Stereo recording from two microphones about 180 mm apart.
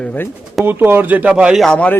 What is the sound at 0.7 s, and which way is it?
Speech, 10° right (ahead or behind).